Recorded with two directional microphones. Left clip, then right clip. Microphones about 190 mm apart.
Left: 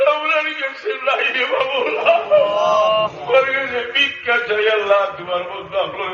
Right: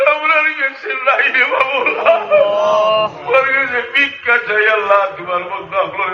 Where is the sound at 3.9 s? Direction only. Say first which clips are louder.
Right 3 dB; 15° left (ahead or behind).